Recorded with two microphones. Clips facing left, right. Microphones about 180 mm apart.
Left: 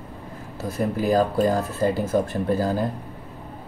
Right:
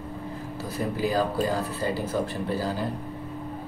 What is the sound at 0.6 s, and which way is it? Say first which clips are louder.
Speech: left 5 dB; 50° left (ahead or behind).